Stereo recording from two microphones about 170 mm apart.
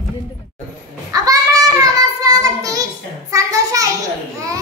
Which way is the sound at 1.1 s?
20° right (ahead or behind).